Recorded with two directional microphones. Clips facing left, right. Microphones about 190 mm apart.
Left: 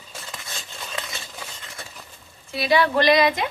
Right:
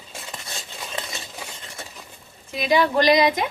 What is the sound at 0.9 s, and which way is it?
Stir, 20° right (ahead or behind).